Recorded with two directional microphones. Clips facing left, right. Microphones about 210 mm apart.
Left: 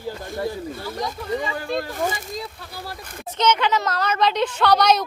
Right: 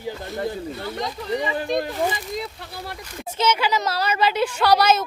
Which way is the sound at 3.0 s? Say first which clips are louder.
Right 2 dB; 50° left (ahead or behind).